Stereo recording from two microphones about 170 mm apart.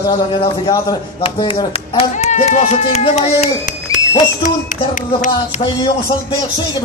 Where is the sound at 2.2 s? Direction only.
40° left (ahead or behind).